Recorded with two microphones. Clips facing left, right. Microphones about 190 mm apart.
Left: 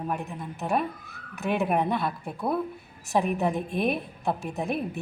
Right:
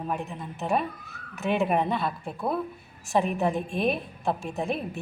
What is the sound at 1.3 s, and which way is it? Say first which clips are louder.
A woman's voice: right 1 dB; 15° left (ahead or behind).